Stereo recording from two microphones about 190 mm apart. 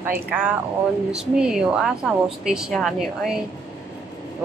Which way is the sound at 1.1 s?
5° right (ahead or behind).